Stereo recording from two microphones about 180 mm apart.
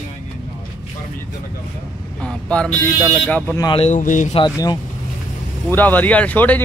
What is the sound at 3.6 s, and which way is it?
Speech, 35° left (ahead or behind).